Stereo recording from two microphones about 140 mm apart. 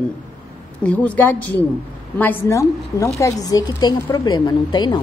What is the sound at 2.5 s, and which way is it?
A woman's voice, 20° left (ahead or behind).